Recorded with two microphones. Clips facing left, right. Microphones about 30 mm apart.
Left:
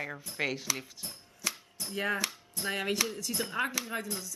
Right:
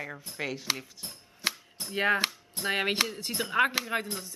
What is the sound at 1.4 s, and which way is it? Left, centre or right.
Chopping, right.